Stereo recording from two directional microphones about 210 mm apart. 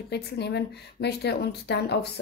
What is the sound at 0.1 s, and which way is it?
A woman's voice, 50° left (ahead or behind).